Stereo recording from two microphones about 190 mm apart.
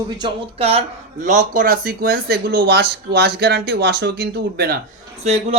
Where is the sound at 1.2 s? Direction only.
40° right (ahead or behind).